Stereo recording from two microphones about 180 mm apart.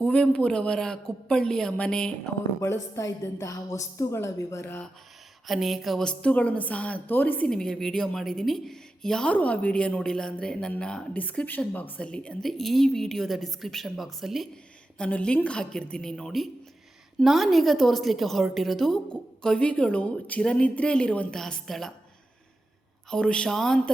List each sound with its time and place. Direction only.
0.0 s a woman's voice: 5° left (ahead or behind)
2.6 s a woman's voice: 15° left (ahead or behind)
5.5 s a woman's voice: centre (ahead or behind)
23.0 s a woman's voice: 5° left (ahead or behind)